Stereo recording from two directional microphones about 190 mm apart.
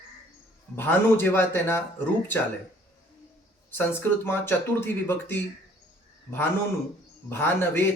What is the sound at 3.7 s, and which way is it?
Speech, 10° left (ahead or behind).